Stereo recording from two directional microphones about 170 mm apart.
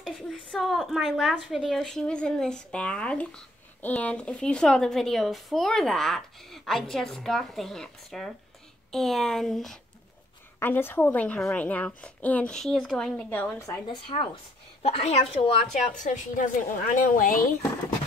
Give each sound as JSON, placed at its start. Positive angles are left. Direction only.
{"t": 0.0, "sound": "a woman's voice", "side_deg": 0}
{"t": 10.6, "sound": "a woman's voice", "side_deg": 10}
{"t": 13.8, "sound": "a woman's voice", "side_deg": 30}